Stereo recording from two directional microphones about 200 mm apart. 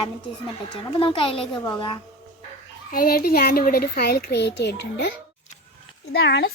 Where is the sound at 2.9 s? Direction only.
50° left (ahead or behind).